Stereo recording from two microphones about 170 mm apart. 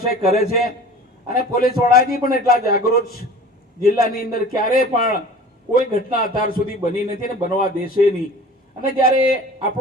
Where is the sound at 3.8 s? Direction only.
60° left (ahead or behind).